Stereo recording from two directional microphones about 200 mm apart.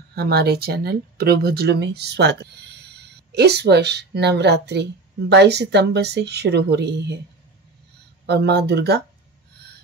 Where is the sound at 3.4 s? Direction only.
55° right (ahead or behind).